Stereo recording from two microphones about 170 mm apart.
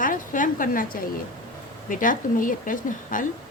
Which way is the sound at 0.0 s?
50° left (ahead or behind).